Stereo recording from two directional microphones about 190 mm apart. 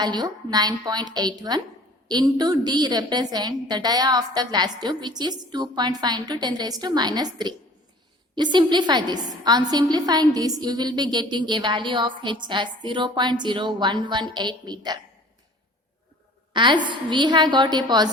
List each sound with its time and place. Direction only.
0.0 s a woman's voice: 20° right (ahead or behind)
16.5 s a woman's voice: 25° right (ahead or behind)